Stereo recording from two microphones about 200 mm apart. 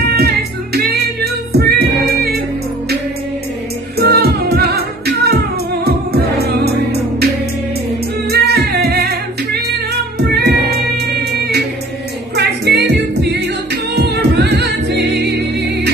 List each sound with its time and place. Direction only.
0.7 s music: 55° right (ahead or behind)
4.0 s music: 50° right (ahead or behind)
8.3 s music: 50° right (ahead or behind)